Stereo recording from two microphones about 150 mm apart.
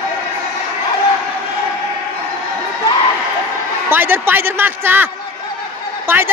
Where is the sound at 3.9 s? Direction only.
15° right (ahead or behind).